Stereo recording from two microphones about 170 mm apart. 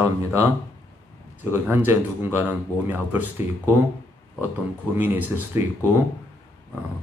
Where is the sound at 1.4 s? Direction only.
15° right (ahead or behind).